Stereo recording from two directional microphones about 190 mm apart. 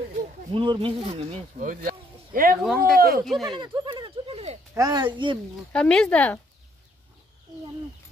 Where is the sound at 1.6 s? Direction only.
45° right (ahead or behind).